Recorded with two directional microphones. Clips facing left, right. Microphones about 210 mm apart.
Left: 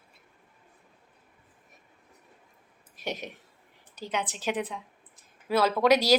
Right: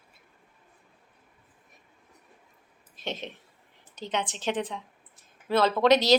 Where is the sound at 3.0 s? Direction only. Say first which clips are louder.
Even; 10° left (ahead or behind).